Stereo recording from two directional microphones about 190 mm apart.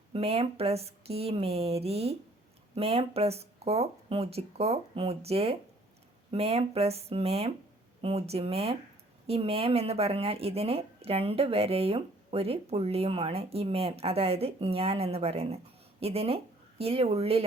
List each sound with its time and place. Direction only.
0.1 s speech: 30° right (ahead or behind)